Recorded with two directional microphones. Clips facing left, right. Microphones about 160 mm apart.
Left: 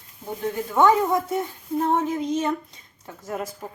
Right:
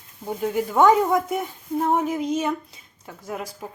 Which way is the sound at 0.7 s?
15° right (ahead or behind).